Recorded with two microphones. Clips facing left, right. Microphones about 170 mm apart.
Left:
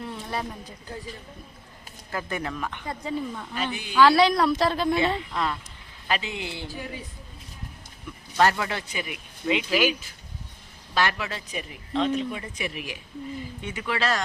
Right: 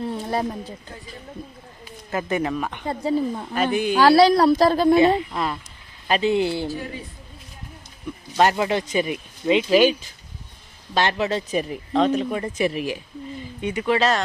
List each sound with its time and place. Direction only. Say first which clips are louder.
0.0 s speech: right 7 dB; 35° right (ahead or behind)
2.1 s speech: right 7 dB; 20° right (ahead or behind)
2.8 s a woman's voice: right 9 dB; 35° right (ahead or behind)
3.5 s a woman's voice: right 8 dB; 50° right (ahead or behind)
8.4 s speech: right 4 dB; 20° right (ahead or behind)
10.9 s speech: right 5 dB; 25° right (ahead or behind)
11.5 s speech: right 7 dB; 40° right (ahead or behind)
13.6 s speech: right 9 dB; 20° right (ahead or behind)